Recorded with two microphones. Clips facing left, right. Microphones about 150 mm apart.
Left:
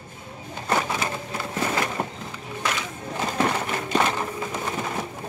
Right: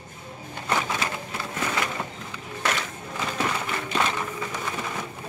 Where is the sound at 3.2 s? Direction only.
35° left (ahead or behind).